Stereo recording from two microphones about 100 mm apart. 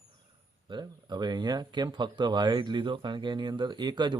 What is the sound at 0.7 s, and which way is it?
Speech, 45° right (ahead or behind).